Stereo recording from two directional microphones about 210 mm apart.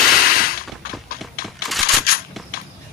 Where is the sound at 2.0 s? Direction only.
45° left (ahead or behind).